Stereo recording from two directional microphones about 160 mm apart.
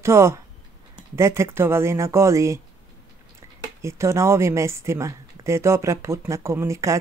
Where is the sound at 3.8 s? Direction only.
15° right (ahead or behind).